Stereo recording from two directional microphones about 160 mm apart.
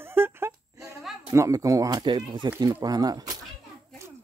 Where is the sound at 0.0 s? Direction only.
15° right (ahead or behind).